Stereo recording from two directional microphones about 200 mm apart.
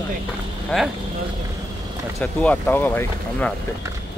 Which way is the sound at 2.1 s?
10° left (ahead or behind).